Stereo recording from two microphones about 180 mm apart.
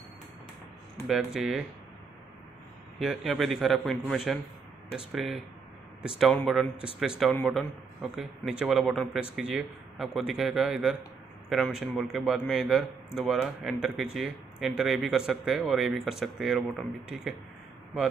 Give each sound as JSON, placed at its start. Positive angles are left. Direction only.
{"t": 1.0, "sound": "a man's voice", "side_deg": 0}
{"t": 3.0, "sound": "a man's voice", "side_deg": 0}